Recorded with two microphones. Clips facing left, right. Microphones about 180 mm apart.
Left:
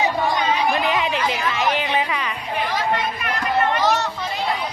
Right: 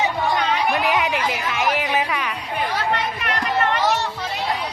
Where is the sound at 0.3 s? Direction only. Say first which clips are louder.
Left 1 dB; 70° right (ahead or behind).